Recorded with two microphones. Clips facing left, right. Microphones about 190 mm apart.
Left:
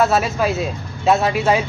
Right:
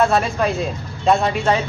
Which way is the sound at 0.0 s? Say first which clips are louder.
Even; 5° left (ahead or behind).